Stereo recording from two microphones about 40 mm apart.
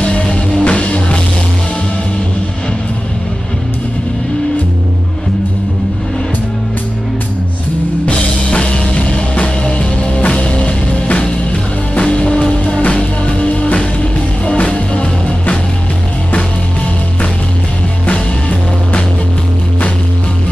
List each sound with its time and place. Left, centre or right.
0.0 s music: left
8.0 s music: left
18.0 s music: left